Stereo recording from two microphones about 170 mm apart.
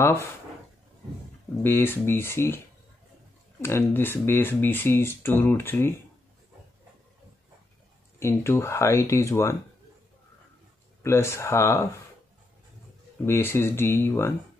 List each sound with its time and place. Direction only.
1.6 s speech: 10° left (ahead or behind)
3.6 s speech: 15° left (ahead or behind)
8.2 s speech: 15° left (ahead or behind)
11.0 s speech: 15° left (ahead or behind)
13.2 s speech: 15° left (ahead or behind)